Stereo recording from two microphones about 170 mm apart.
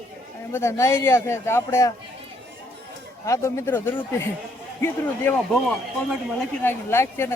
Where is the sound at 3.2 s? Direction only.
15° left (ahead or behind).